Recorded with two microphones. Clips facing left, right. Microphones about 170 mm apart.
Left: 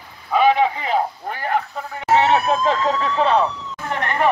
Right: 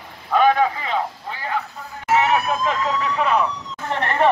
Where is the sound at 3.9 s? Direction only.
30° right (ahead or behind).